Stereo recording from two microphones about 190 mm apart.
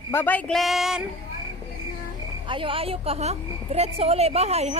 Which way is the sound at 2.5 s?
30° right (ahead or behind).